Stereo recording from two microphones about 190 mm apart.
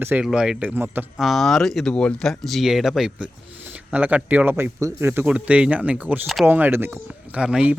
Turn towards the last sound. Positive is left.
turn(degrees=-5)  # may be behind; listen again after turning